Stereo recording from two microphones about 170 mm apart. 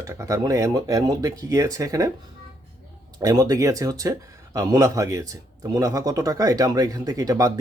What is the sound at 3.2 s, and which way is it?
Speech, 20° right (ahead or behind).